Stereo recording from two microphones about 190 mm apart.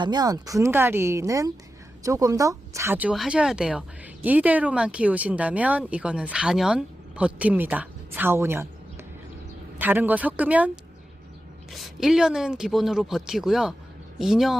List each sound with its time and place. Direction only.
0.0 s speech: 20° right (ahead or behind)
9.7 s speech: 10° right (ahead or behind)
11.7 s speech: centre (ahead or behind)